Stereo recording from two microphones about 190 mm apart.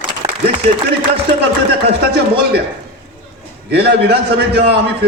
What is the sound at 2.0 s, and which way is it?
Speech, 55° right (ahead or behind).